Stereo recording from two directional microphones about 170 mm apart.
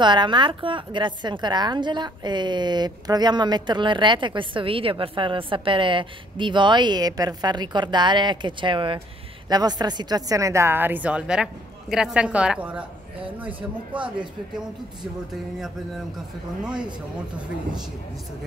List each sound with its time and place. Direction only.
0.0 s a woman's voice: 25° right (ahead or behind); by 12.8 s 10° right (ahead or behind)